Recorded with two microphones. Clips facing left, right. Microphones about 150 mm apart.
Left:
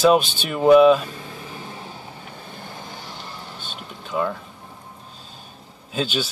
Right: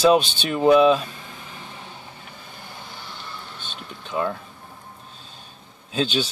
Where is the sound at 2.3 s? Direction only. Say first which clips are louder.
Left 4 dB; 50° left (ahead or behind).